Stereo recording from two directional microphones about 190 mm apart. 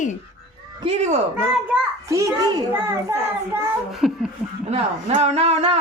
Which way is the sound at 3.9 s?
Centre (ahead or behind).